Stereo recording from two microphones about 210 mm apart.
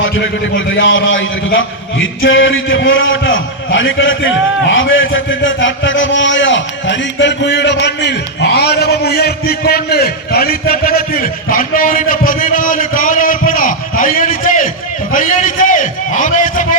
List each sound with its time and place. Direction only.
0.5 s a man's voice: 65° left (ahead or behind); by 16.6 s 40° left (ahead or behind)